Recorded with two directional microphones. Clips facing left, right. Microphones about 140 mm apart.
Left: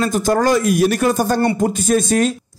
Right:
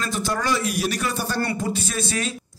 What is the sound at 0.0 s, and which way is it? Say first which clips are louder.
Speech: left 10 dB; 45° left (ahead or behind).